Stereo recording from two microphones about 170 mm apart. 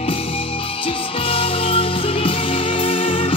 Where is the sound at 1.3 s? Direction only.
35° left (ahead or behind).